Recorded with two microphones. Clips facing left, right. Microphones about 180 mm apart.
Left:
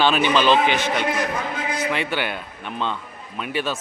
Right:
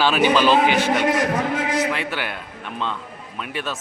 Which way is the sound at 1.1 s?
85° right.